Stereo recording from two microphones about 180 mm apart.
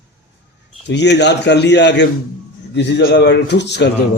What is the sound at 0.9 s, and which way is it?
A man's voice, 70° left (ahead or behind).